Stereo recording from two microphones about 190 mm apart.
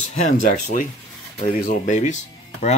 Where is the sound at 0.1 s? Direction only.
40° left (ahead or behind).